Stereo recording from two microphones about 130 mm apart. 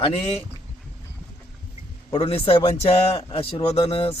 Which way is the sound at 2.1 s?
45° left (ahead or behind).